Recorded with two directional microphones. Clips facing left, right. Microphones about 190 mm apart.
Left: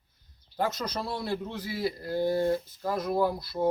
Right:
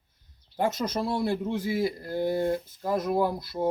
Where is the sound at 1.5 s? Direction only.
50° right (ahead or behind).